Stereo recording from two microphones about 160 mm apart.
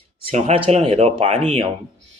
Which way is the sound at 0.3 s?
40° right (ahead or behind).